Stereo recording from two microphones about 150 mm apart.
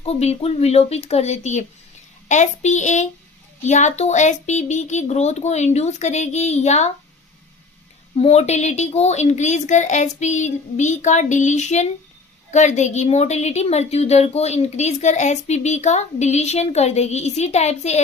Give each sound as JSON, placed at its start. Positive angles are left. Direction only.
{"t": 0.0, "sound": "a woman's voice", "side_deg": 45}
{"t": 8.1, "sound": "a woman's voice", "side_deg": 45}